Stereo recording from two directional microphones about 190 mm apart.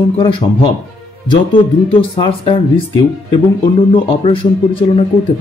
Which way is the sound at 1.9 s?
30° left (ahead or behind).